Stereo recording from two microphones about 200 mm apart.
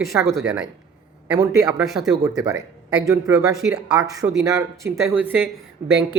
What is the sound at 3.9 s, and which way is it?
Speech, 15° right (ahead or behind).